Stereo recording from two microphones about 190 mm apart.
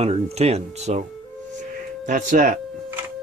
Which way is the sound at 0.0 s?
35° right (ahead or behind).